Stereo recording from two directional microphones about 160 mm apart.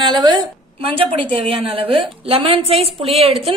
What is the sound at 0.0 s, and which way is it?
A woman's voice, 30° right (ahead or behind).